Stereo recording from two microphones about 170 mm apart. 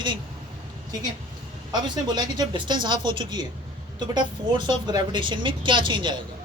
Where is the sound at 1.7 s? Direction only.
25° right (ahead or behind).